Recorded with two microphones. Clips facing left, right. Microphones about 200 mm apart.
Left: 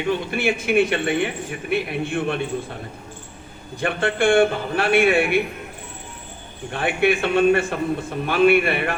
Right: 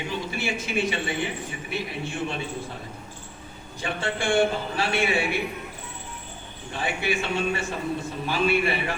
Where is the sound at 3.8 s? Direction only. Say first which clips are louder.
Left 8 dB; 60° left (ahead or behind).